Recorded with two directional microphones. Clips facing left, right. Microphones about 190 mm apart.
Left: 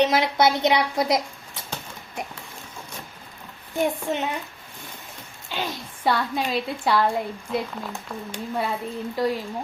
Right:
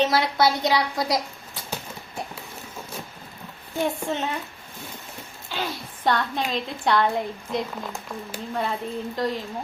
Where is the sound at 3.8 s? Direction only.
15° left (ahead or behind).